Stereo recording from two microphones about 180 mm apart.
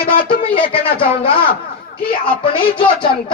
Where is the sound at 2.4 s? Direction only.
30° left (ahead or behind).